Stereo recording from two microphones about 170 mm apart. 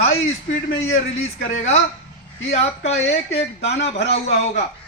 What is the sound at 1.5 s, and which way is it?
A man's voice, 40° left (ahead or behind).